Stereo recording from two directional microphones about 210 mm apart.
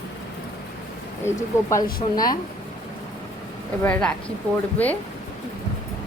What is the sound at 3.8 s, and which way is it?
Speech, 5° left (ahead or behind).